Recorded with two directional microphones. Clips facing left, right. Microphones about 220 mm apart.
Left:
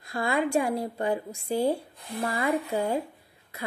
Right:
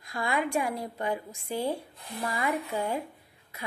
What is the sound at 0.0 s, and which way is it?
A woman's voice, 35° left (ahead or behind).